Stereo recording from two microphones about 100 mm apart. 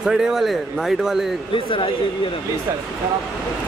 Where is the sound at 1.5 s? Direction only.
60° left (ahead or behind).